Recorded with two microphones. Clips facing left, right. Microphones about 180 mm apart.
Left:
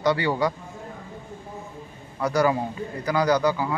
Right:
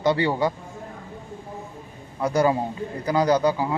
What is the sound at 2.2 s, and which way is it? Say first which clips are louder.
A man's voice: right 1 dB; 25° right (ahead or behind).